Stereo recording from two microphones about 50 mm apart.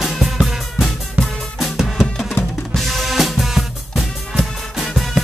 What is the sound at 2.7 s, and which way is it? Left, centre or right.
Drum kit, centre.